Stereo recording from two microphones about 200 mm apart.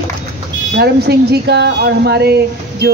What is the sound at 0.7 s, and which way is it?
Speech, 55° right (ahead or behind).